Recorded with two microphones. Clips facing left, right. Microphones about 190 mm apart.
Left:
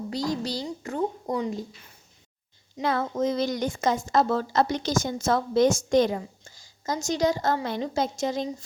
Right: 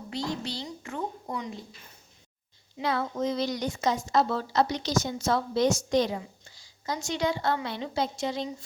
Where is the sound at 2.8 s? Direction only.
50° left (ahead or behind).